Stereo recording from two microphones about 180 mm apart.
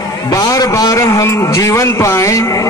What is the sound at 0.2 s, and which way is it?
A man's voice, 20° left (ahead or behind).